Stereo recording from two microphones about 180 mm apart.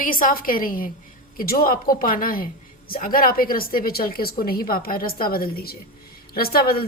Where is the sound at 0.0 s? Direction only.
50° left (ahead or behind).